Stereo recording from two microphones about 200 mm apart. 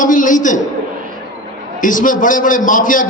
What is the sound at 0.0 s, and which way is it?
Speech, 40° left (ahead or behind).